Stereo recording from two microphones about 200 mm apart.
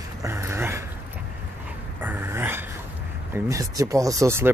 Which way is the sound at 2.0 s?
10° right (ahead or behind).